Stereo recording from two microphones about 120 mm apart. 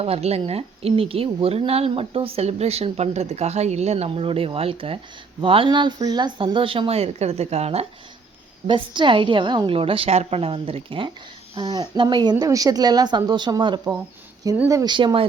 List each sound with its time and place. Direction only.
0.0 s a woman's voice: 55° right (ahead or behind)
8.6 s a woman's voice: 40° right (ahead or behind)
11.5 s speech: 35° right (ahead or behind)
14.8 s a woman's voice: 45° right (ahead or behind)